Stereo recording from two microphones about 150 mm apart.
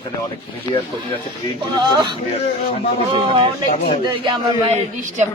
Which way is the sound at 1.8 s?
30° right (ahead or behind).